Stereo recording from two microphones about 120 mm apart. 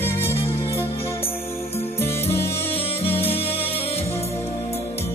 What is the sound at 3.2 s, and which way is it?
Music, 55° left (ahead or behind).